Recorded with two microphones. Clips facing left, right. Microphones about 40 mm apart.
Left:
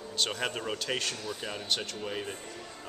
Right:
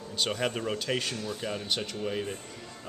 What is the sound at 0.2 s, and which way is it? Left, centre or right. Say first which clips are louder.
A man's voice: right 2 dB; centre.